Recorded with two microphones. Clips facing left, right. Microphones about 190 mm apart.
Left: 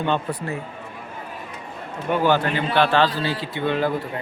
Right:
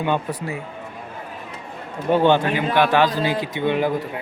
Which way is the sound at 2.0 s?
30° right (ahead or behind).